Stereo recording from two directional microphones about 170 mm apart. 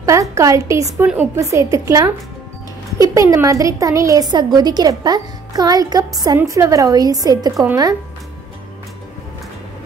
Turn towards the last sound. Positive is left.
turn(degrees=-15)  # may be behind; listen again after turning